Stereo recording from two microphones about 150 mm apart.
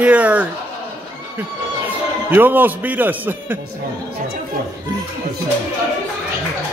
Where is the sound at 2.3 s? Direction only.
10° right (ahead or behind).